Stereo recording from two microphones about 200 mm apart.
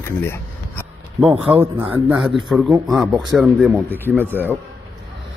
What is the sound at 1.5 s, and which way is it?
Speech, 10° right (ahead or behind).